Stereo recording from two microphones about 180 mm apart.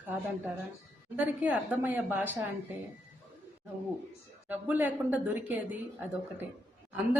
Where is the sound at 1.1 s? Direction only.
10° right (ahead or behind).